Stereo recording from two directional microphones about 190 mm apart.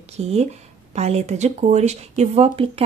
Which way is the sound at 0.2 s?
35° right (ahead or behind).